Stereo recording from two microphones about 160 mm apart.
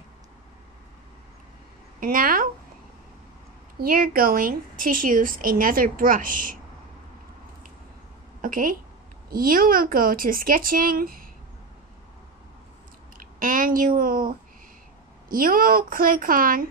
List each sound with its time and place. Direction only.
2.0 s speech: 60° right (ahead or behind)
3.8 s a woman's voice: 65° right (ahead or behind)
8.4 s a woman's voice: 60° right (ahead or behind)
13.2 s a woman's voice: 60° right (ahead or behind)